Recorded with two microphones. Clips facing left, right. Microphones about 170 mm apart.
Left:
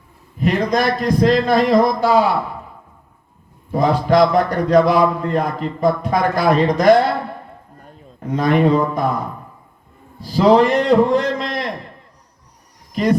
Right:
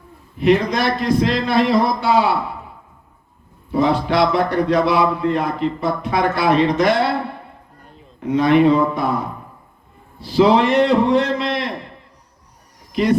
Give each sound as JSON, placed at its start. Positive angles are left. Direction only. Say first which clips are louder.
{"t": 0.3, "sound": "a man's voice", "louder": "right 1 dB", "side_deg": 40}
{"t": 3.7, "sound": "a man's voice", "louder": "left 2 dB", "side_deg": 40}
{"t": 8.4, "sound": "a man's voice", "louder": "right 2 dB", "side_deg": 40}
{"t": 10.2, "sound": "a man's voice", "louder": "left 1 dB", "side_deg": 40}
{"t": 12.9, "sound": "speech", "louder": "even", "side_deg": 40}